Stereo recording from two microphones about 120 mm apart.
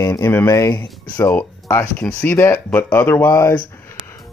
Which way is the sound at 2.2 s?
15° left (ahead or behind).